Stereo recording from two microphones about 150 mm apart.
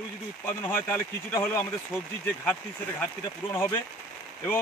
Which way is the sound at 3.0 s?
15° left (ahead or behind).